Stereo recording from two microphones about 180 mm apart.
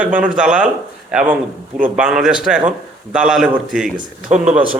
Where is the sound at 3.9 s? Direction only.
40° right (ahead or behind).